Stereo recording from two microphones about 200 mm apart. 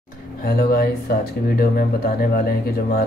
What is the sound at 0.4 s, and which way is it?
Speech, 50° left (ahead or behind).